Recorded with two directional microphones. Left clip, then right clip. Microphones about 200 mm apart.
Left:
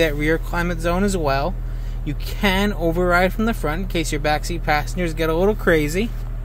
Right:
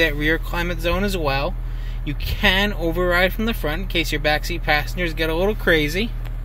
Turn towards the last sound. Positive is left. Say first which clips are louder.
# even
turn(degrees=15)  # may be behind; listen again after turning